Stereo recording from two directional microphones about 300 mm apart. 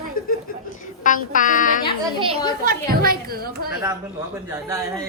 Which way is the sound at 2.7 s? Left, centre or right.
Right.